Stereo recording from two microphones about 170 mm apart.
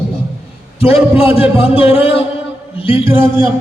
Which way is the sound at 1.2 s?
35° left (ahead or behind).